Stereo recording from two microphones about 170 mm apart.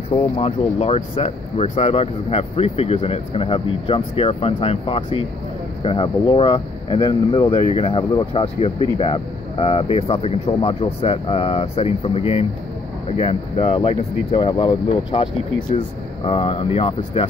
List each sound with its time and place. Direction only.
0.4 s speech: 35° left (ahead or behind)
16.3 s speech: 35° left (ahead or behind)